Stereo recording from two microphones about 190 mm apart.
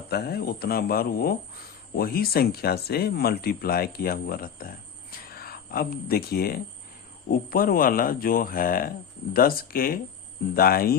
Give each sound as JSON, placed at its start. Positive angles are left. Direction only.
{"t": 0.1, "sound": "speech", "side_deg": 55}